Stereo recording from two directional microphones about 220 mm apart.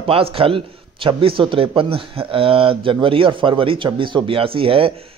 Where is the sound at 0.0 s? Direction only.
25° right (ahead or behind).